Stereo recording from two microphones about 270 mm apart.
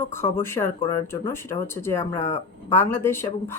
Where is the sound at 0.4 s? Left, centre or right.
Centre.